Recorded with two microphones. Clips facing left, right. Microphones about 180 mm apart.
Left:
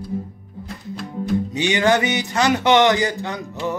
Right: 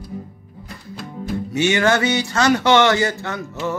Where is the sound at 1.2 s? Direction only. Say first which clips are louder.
Even; 15° left (ahead or behind).